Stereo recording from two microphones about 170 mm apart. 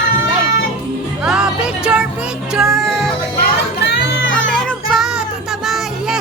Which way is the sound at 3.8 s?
90° left.